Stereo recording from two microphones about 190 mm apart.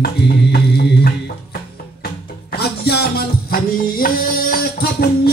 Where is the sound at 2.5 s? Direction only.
55° left (ahead or behind).